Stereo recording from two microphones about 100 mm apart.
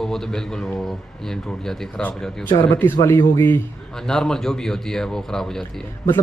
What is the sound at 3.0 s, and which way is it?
Speech, 30° left (ahead or behind).